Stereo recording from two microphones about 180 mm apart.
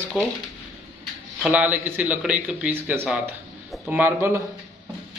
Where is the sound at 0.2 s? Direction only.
5° right (ahead or behind).